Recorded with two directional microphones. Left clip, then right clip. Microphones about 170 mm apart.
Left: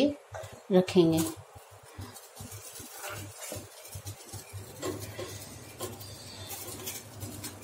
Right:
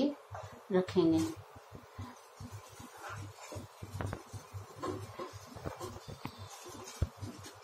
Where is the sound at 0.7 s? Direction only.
60° left (ahead or behind).